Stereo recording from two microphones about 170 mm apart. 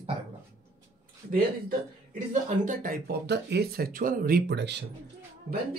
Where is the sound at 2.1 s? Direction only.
50° right (ahead or behind); by 4.8 s 85° right.